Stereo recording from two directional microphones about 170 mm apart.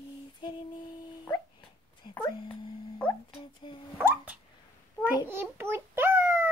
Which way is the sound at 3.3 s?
30° left (ahead or behind).